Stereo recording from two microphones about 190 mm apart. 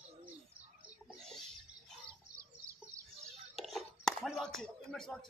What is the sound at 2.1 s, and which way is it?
Bird, 15° right (ahead or behind).